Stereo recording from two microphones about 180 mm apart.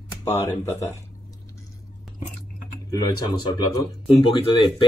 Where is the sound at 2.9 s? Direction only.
25° left (ahead or behind).